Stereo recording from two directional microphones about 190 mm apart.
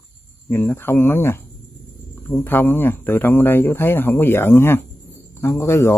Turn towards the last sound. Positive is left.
turn(degrees=15)  # may be behind; listen again after turning